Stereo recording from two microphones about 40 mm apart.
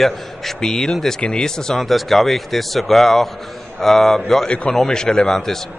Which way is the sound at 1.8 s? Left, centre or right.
Centre.